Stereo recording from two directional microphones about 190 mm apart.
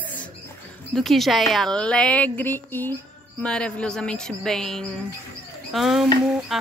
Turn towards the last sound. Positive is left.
turn(degrees=0)  # may be behind; listen again after turning